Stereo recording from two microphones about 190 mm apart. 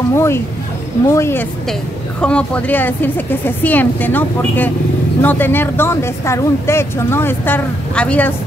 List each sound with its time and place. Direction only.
0.1 s speech: 15° left (ahead or behind)